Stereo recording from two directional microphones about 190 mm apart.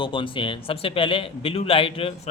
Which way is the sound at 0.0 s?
25° left (ahead or behind).